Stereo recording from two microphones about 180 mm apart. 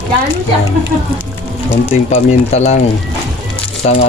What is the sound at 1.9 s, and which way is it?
Speech, 35° left (ahead or behind).